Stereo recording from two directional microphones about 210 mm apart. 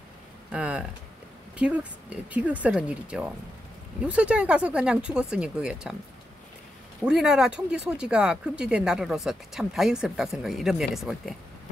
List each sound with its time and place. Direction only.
0.5 s speech: 5° right (ahead or behind)
7.1 s speech: 5° right (ahead or behind)